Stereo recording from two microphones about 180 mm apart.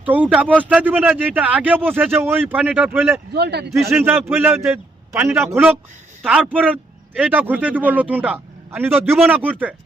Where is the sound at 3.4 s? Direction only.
65° right (ahead or behind).